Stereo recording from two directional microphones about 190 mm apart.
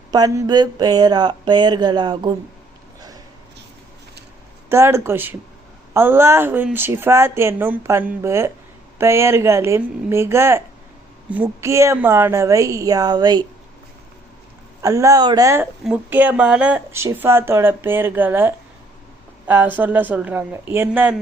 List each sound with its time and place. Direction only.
0.1 s a sound: 20° right (ahead or behind)
4.7 s speech: 15° right (ahead or behind)
14.8 s speech: 15° right (ahead or behind)
15.8 s speech: 5° right (ahead or behind)